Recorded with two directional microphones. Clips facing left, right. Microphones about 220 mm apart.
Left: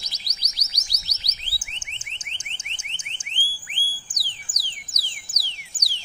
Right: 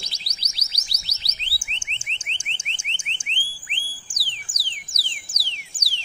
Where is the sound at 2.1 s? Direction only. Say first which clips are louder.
Right 5 dB; 30° right (ahead or behind).